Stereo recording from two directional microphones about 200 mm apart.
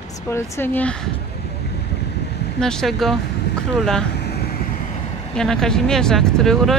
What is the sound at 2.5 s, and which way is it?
Speech, 5° left (ahead or behind).